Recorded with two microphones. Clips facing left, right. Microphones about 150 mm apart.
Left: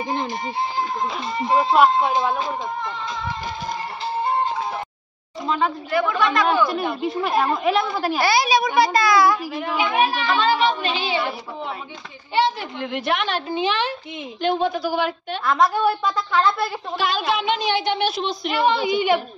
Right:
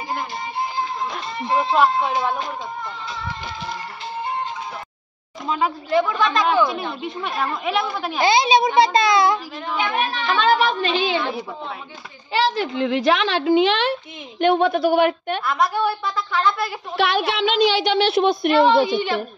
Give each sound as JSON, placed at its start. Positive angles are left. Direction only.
{"t": 1.4, "sound": "a woman's voice", "side_deg": 15}
{"t": 5.9, "sound": "a child's voice", "side_deg": -20}
{"t": 6.7, "sound": "speech", "side_deg": 5}
{"t": 8.2, "sound": "a child's voice", "side_deg": -20}
{"t": 9.6, "sound": "a woman's voice", "side_deg": 10}
{"t": 12.3, "sound": "a woman's voice", "side_deg": -90}
{"t": 16.9, "sound": "a woman's voice", "side_deg": -65}
{"t": 18.5, "sound": "a woman's voice", "side_deg": 15}